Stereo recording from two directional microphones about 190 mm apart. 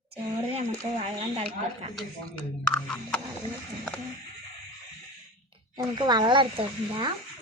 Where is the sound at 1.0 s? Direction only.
30° right (ahead or behind).